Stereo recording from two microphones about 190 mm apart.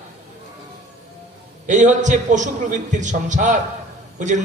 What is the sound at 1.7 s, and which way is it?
A man's voice, 40° right (ahead or behind).